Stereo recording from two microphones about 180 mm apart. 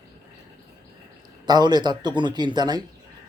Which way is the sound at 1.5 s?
25° right (ahead or behind).